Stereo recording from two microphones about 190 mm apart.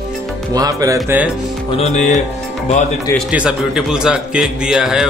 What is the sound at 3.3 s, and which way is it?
A man's voice, 5° right (ahead or behind).